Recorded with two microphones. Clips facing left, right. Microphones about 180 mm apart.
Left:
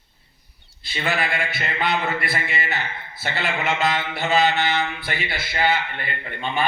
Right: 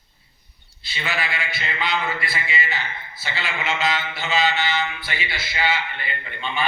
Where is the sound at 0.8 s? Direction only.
50° left (ahead or behind).